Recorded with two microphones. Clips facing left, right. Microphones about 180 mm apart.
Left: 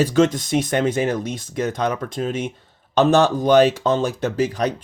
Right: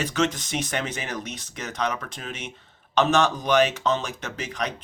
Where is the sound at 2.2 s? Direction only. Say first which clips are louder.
Left 12 dB; 40° left (ahead or behind).